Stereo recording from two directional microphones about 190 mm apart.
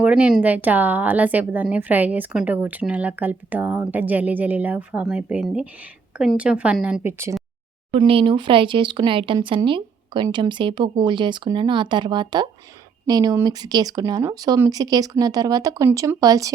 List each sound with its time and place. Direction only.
0.0 s a woman's voice: 5° right (ahead or behind)
7.9 s speech: 25° right (ahead or behind)